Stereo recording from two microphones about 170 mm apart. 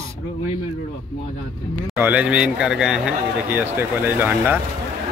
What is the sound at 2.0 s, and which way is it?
Speech, 10° right (ahead or behind).